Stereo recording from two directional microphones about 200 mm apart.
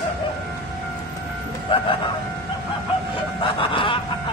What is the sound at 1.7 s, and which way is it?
Speech, 25° left (ahead or behind).